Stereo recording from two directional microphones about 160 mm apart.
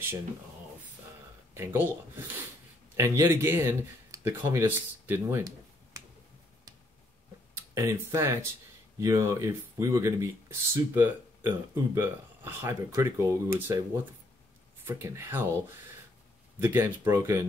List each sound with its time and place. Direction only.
1.5 s speech: 15° right (ahead or behind)
7.5 s speech: 15° right (ahead or behind)
14.9 s speech: 15° right (ahead or behind)